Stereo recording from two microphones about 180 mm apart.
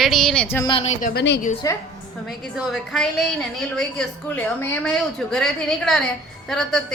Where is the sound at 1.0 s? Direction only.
65° left (ahead or behind).